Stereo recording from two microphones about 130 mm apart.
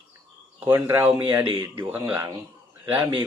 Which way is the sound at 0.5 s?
15° right (ahead or behind).